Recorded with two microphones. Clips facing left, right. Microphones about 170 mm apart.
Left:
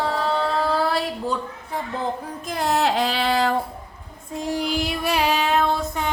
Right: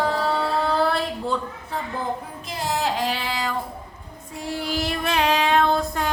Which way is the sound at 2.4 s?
55° left (ahead or behind).